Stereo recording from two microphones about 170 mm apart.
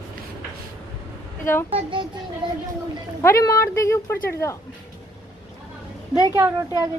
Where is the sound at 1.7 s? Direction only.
30° right (ahead or behind).